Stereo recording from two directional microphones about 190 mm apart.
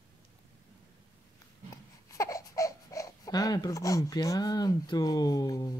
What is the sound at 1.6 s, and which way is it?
Speech, 15° left (ahead or behind).